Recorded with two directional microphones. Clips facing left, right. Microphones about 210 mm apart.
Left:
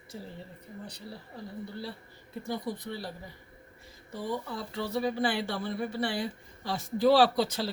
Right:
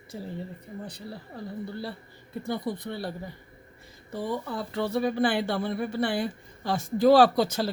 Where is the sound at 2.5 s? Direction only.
60° right (ahead or behind).